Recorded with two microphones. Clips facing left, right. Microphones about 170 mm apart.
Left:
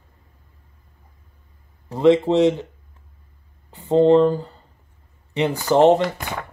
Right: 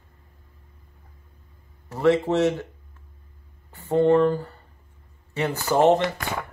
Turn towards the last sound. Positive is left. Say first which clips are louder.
# left 4 dB
turn(degrees=20)  # may be behind; listen again after turning